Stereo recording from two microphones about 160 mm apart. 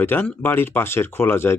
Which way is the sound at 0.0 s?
10° left (ahead or behind).